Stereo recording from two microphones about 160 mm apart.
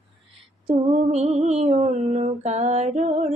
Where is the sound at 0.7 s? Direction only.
45° right (ahead or behind).